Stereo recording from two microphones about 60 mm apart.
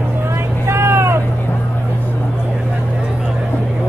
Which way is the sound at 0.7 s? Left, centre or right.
Right.